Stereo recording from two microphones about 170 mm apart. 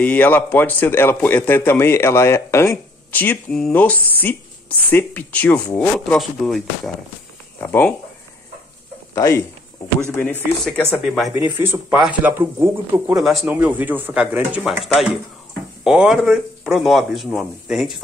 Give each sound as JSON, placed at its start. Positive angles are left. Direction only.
{"t": 0.0, "sound": "a man's voice", "side_deg": 10}
{"t": 7.6, "sound": "a man's voice", "side_deg": 15}
{"t": 9.1, "sound": "a man's voice", "side_deg": 20}
{"t": 10.6, "sound": "speech", "side_deg": 0}
{"t": 11.3, "sound": "speech", "side_deg": -10}
{"t": 13.1, "sound": "speech", "side_deg": 0}